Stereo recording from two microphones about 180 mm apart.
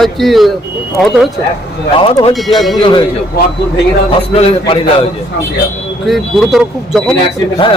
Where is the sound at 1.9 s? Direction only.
30° left (ahead or behind).